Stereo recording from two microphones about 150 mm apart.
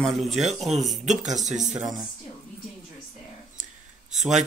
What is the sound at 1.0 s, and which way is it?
Speech, 50° right (ahead or behind).